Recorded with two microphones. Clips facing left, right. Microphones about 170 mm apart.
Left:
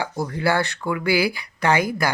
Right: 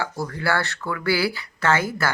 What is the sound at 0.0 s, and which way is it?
Speech, 20° left (ahead or behind).